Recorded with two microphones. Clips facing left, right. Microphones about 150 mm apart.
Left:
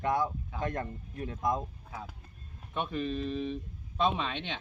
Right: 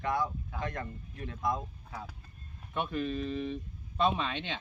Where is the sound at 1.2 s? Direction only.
15° left (ahead or behind).